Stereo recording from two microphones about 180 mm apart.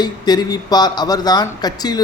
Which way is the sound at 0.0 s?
20° left (ahead or behind).